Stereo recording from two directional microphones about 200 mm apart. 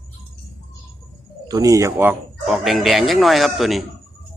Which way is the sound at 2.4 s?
Centre (ahead or behind).